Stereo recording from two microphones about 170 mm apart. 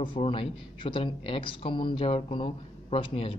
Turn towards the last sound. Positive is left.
turn(degrees=30)  # may be behind; listen again after turning